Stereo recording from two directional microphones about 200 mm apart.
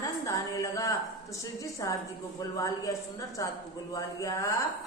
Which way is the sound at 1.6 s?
15° left (ahead or behind).